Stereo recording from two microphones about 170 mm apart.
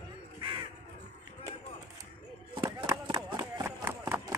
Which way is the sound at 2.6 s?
25° right (ahead or behind).